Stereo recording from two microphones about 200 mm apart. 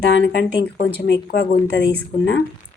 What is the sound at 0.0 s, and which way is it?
Speech, 60° left (ahead or behind).